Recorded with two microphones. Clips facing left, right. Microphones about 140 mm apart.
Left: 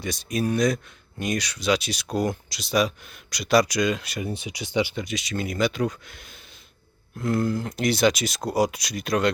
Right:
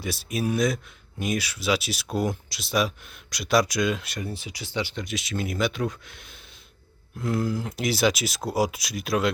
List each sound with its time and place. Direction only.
0.0 s speech: 5° right (ahead or behind)
4.2 s speech: 20° left (ahead or behind)
5.0 s speech: centre (ahead or behind)